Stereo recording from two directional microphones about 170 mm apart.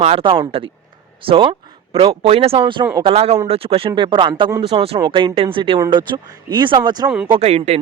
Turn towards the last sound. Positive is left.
turn(degrees=-40)  # may be behind; listen again after turning